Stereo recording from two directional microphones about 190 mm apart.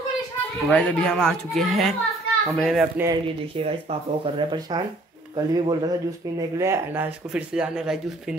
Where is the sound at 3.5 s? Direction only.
30° right (ahead or behind).